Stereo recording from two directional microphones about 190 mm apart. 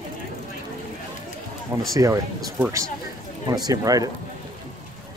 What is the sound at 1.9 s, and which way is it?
Speech, 15° right (ahead or behind).